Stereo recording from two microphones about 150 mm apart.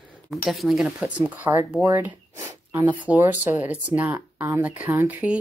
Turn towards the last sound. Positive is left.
turn(degrees=-10)  # may be behind; listen again after turning